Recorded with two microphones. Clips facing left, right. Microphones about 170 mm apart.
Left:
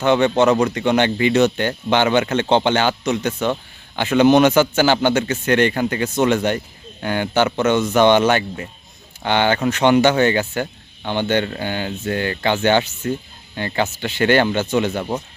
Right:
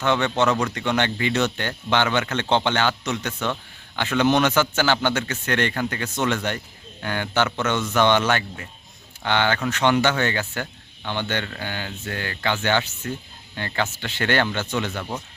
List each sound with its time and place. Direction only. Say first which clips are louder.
0.0 s speech: left 6 dB; 15° left (ahead or behind)